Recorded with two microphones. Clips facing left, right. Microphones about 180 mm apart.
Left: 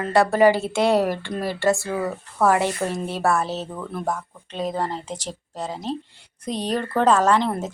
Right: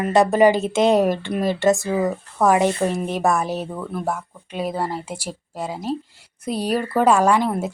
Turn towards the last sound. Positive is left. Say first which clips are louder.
# right 2 dB
turn(degrees=-10)  # may be behind; listen again after turning